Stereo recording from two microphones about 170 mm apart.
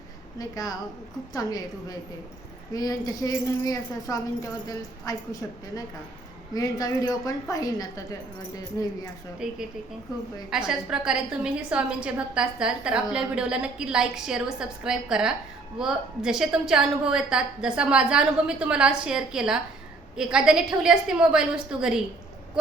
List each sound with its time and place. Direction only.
0.3 s a woman's voice: 20° left (ahead or behind)
9.4 s a woman's voice: 5° right (ahead or behind)